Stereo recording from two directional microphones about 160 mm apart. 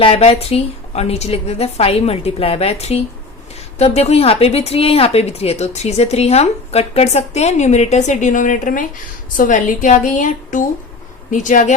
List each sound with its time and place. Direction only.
0.0 s a woman's voice: 40° left (ahead or behind)